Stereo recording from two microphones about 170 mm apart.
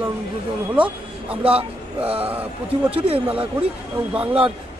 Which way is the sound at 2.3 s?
10° right (ahead or behind).